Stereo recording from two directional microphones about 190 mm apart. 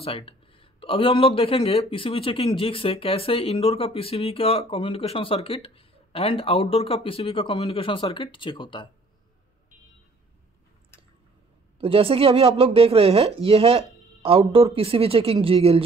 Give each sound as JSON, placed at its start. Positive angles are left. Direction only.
{"t": 0.0, "sound": "speech", "side_deg": 30}
{"t": 11.8, "sound": "speech", "side_deg": -30}